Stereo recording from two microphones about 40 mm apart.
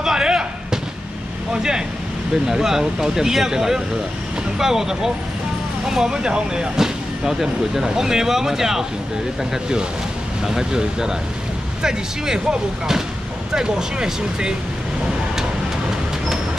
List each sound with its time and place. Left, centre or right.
0.0 s basketball bounce: centre
1.5 s speech: centre
10.4 s speech: centre